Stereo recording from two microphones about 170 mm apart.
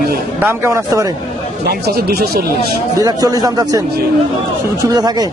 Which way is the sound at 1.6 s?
65° right (ahead or behind).